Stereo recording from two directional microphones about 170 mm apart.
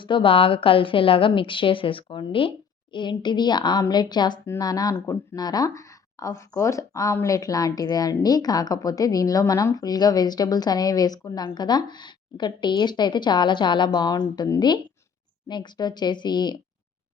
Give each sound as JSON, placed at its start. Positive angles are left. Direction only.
{"t": 0.0, "sound": "a woman's voice", "side_deg": 30}